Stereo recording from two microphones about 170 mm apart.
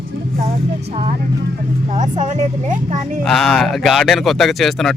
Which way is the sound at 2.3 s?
45° right (ahead or behind).